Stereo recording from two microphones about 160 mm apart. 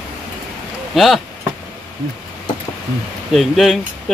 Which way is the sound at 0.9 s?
Centre (ahead or behind).